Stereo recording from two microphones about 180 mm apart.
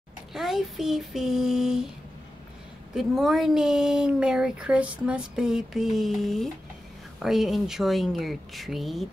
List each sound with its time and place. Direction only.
0.3 s speech: centre (ahead or behind)
2.9 s speech: centre (ahead or behind)